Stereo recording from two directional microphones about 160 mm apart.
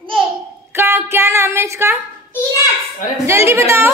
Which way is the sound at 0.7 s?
15° right (ahead or behind).